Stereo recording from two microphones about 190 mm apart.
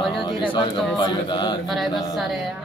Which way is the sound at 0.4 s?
25° left (ahead or behind).